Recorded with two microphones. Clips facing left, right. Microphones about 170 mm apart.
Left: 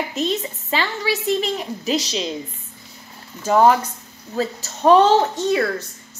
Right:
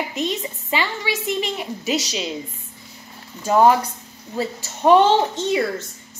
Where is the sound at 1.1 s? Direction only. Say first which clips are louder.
Left 3 dB; 40° left (ahead or behind).